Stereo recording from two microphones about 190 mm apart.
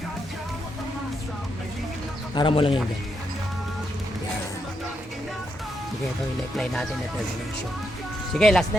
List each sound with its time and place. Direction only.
2.3 s speech: 25° left (ahead or behind)
8.3 s speech: 5° left (ahead or behind)